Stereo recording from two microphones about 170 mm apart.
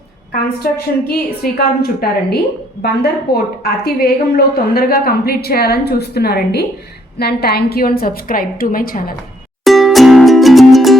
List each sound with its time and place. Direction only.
0.6 s a woman's voice: 65° left (ahead or behind)
9.6 s music: centre (ahead or behind)